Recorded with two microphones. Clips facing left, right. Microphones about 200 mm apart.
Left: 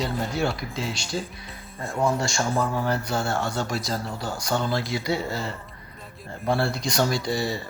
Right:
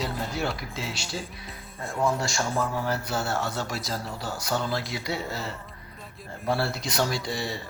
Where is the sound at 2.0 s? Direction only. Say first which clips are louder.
Left 2 dB; centre (ahead or behind).